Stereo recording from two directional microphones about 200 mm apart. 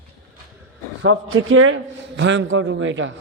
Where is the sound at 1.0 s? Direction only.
85° right.